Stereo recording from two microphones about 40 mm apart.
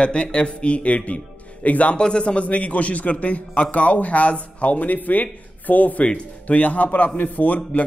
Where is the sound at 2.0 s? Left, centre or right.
Left.